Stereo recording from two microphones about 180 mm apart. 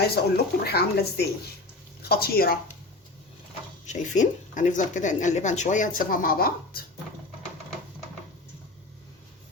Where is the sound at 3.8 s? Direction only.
45° left (ahead or behind).